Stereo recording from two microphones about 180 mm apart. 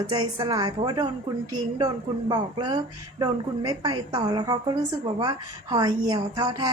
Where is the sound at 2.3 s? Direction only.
25° right (ahead or behind).